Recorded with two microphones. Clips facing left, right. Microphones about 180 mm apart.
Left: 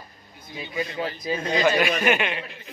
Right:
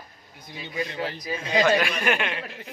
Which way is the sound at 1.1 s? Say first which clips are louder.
Left 4 dB; 25° left (ahead or behind).